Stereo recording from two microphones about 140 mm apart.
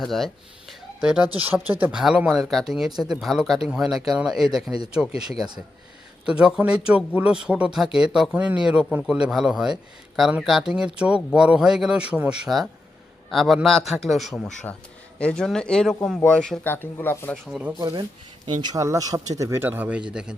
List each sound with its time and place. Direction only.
0.0 s speech: centre (ahead or behind)
0.7 s a sound: 5° right (ahead or behind)
1.8 s speech: 5° right (ahead or behind)
13.3 s speech: centre (ahead or behind); by 17.3 s 15° left (ahead or behind)
17.4 s speech: centre (ahead or behind)
17.7 s speech: 30° right (ahead or behind); by 20.3 s 5° right (ahead or behind)